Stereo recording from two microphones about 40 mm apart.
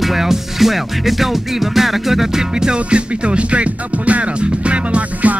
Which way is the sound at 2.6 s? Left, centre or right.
Right.